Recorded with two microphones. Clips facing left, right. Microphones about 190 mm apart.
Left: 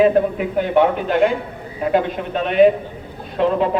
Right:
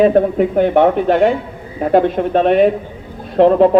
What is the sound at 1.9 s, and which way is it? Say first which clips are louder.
Speech: right 8 dB; 45° right (ahead or behind).